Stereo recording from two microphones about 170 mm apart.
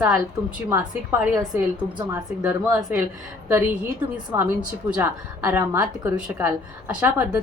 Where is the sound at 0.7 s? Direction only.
20° right (ahead or behind).